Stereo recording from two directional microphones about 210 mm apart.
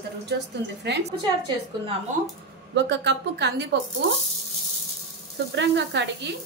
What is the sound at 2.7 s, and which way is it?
Speech, 60° right (ahead or behind).